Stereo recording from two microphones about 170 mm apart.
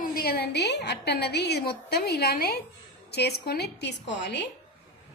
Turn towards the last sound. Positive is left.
turn(degrees=80)